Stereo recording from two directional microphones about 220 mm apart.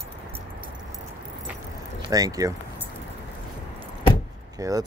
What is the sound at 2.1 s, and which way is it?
Speech, 15° right (ahead or behind).